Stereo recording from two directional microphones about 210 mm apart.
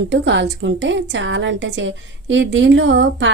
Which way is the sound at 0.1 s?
60° right (ahead or behind).